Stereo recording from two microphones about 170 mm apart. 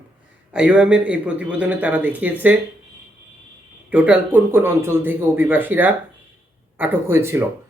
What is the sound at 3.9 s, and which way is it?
Speech, 10° right (ahead or behind).